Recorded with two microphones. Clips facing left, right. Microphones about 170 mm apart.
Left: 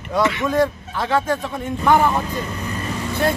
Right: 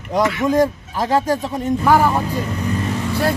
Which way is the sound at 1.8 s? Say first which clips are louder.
Right 1 dB; 5° right (ahead or behind).